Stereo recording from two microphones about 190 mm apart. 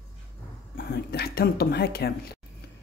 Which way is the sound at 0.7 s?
55° left (ahead or behind).